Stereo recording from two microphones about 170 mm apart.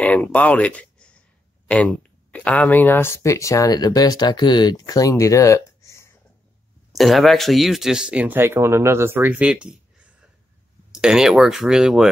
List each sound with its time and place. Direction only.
0.0 s speech: 10° left (ahead or behind)
6.9 s speech: centre (ahead or behind)
10.9 s speech: 5° right (ahead or behind)